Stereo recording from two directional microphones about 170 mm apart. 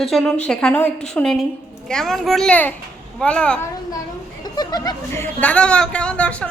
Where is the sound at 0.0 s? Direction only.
Centre (ahead or behind).